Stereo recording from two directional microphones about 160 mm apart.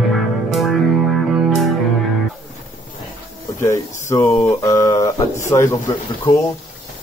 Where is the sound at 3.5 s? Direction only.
15° left (ahead or behind).